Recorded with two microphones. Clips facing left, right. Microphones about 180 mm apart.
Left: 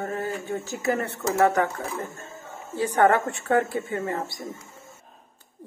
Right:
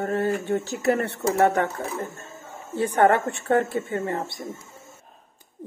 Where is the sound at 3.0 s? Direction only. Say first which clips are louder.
Right 1 dB; 25° right (ahead or behind).